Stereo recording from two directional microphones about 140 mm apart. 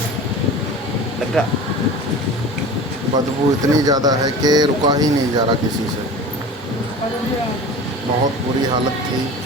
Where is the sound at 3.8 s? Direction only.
30° right (ahead or behind).